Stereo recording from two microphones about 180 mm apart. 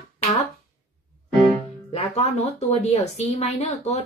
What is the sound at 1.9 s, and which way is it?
Speech, 35° left (ahead or behind).